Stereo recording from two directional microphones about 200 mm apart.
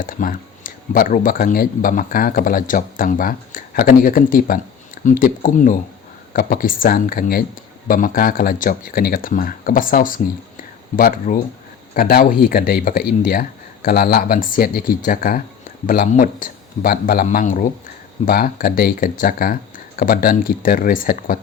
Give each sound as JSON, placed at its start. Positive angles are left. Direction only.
{"t": 0.0, "sound": "speech", "side_deg": 45}